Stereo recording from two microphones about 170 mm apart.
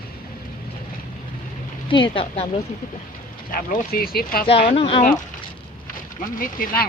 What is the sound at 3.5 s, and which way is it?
Speech, 60° left (ahead or behind).